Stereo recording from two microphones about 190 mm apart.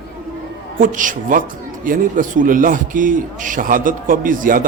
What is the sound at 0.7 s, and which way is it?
Speech, 45° right (ahead or behind).